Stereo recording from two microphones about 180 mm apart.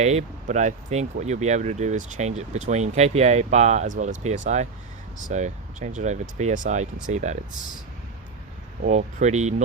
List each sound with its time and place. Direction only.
0.0 s speech: 40° right (ahead or behind)
8.9 s speech: 40° right (ahead or behind)